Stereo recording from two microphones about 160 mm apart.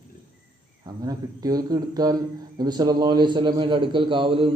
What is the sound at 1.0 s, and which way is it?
A man's voice, 25° right (ahead or behind).